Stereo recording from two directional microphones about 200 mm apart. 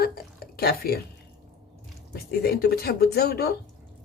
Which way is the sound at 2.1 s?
50° left (ahead or behind).